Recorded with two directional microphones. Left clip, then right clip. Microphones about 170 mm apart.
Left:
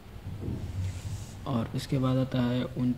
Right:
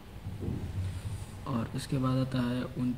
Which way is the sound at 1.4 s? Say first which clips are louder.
Left 3 dB; 20° left (ahead or behind).